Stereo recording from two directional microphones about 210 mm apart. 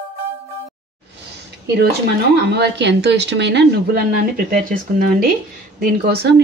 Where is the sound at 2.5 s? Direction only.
55° right (ahead or behind).